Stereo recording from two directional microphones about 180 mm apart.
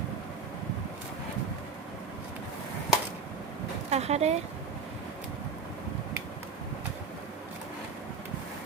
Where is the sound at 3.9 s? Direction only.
35° right (ahead or behind).